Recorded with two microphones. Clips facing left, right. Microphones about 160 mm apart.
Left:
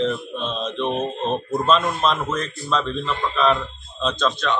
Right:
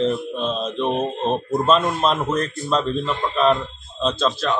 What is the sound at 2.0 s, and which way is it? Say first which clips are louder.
Speech: right 2 dB; 35° right (ahead or behind).